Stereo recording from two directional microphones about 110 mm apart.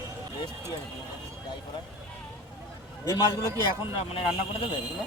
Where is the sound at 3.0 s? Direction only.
40° left (ahead or behind).